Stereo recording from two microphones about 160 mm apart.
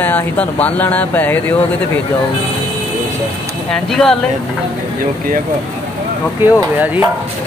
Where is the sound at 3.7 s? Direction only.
5° left (ahead or behind).